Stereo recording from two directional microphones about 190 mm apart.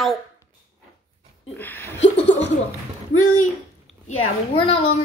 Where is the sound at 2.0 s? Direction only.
70° left (ahead or behind).